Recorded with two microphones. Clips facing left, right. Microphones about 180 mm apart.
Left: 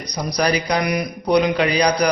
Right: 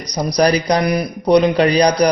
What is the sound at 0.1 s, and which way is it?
Speech, 40° right (ahead or behind).